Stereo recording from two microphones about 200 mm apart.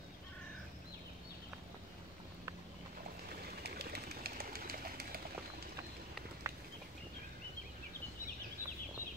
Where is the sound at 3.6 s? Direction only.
55° right (ahead or behind).